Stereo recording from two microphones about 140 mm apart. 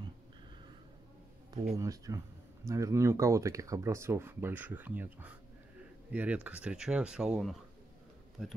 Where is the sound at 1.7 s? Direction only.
25° right (ahead or behind).